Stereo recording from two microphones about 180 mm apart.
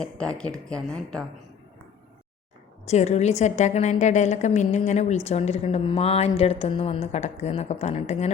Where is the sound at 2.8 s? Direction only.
40° left (ahead or behind).